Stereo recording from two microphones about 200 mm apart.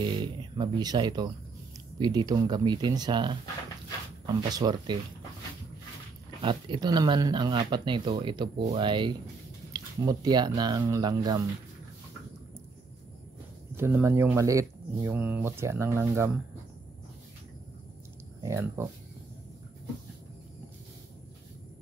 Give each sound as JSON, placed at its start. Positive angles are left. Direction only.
{"t": 0.0, "sound": "speech", "side_deg": -25}
{"t": 4.5, "sound": "speech", "side_deg": -20}
{"t": 6.4, "sound": "speech", "side_deg": -25}
{"t": 13.7, "sound": "speech", "side_deg": -10}
{"t": 18.4, "sound": "speech", "side_deg": -15}